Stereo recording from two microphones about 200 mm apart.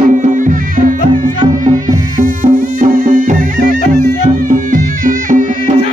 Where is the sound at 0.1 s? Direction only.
40° right (ahead or behind).